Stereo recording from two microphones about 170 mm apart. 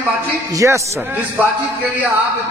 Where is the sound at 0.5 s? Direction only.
20° right (ahead or behind).